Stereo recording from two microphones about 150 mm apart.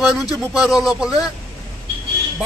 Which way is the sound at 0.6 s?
Centre (ahead or behind).